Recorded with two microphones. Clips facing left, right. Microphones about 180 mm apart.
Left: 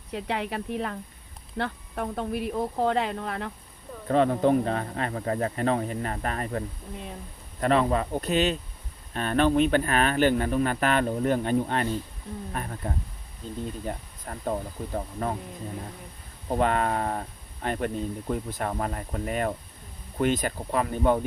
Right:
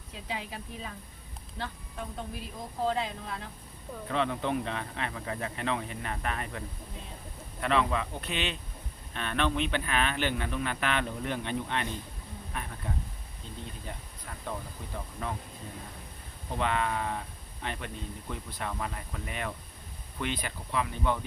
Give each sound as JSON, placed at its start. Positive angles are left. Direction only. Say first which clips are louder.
{"t": 0.1, "sound": "speech", "louder": "left 9 dB", "side_deg": 70}
{"t": 4.1, "sound": "speech", "louder": "left 9 dB", "side_deg": 40}
{"t": 16.5, "sound": "speech", "louder": "left 6 dB", "side_deg": 45}